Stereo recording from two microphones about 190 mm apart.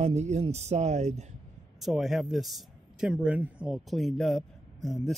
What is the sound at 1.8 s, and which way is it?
Speech, centre (ahead or behind).